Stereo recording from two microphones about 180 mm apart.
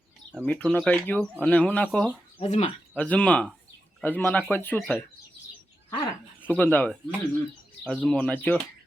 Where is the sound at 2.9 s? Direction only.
5° left (ahead or behind).